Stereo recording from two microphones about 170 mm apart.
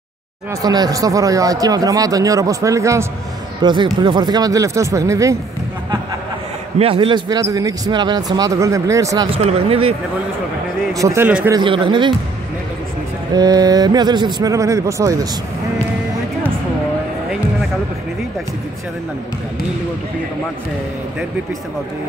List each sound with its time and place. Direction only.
0.5 s speech: 20° right (ahead or behind)
6.8 s speech: 35° right (ahead or behind)
9.3 s speech: 35° right (ahead or behind)
10.9 s speech: 20° right (ahead or behind)
11.5 s speech: 30° right (ahead or behind)
13.3 s speech: 25° right (ahead or behind)